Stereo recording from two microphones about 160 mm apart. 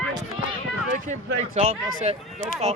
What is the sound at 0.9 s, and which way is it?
Speech, 50° right (ahead or behind).